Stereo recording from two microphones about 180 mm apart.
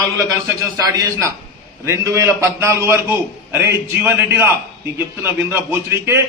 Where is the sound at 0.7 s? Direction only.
20° right (ahead or behind).